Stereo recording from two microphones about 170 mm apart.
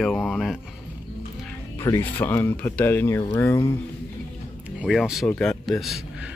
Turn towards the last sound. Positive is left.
turn(degrees=0)  # may be behind; listen again after turning